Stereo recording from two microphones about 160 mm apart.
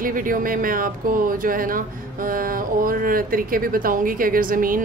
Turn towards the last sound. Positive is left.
turn(degrees=-60)  # may be behind; listen again after turning